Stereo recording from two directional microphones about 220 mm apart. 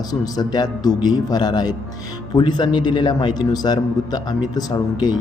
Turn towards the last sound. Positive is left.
turn(degrees=20)  # may be behind; listen again after turning